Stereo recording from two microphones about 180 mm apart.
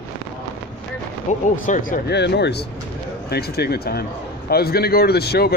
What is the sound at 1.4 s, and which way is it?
Speech, 45° left (ahead or behind).